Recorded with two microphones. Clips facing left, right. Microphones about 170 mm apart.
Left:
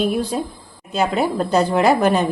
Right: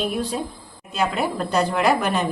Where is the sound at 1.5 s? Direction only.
30° left (ahead or behind).